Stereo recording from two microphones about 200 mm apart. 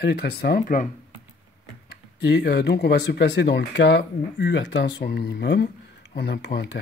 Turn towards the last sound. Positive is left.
turn(degrees=55)  # may be behind; listen again after turning